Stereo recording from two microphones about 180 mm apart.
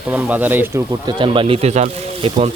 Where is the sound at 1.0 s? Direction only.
25° right (ahead or behind).